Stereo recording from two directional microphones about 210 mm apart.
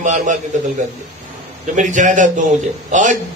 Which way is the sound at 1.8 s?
35° right (ahead or behind).